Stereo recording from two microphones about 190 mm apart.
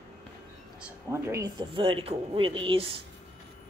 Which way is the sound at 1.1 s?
15° right (ahead or behind).